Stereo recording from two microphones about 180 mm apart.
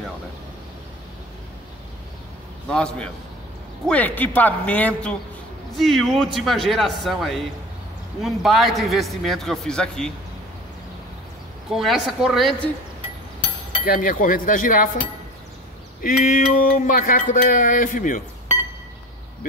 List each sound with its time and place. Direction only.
2.7 s a man's voice: 5° left (ahead or behind)
11.7 s a man's voice: centre (ahead or behind)
13.8 s speech: 50° left (ahead or behind)
16.0 s speech: 50° left (ahead or behind)